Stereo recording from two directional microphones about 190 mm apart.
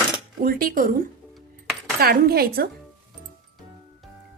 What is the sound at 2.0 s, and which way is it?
Speech, 55° right (ahead or behind).